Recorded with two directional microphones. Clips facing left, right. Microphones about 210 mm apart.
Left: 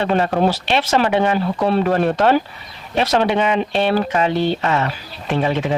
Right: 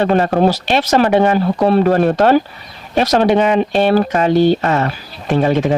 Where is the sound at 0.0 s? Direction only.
45° right (ahead or behind).